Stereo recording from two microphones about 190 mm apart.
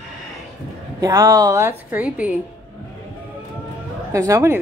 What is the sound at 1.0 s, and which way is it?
A woman's voice, 15° right (ahead or behind).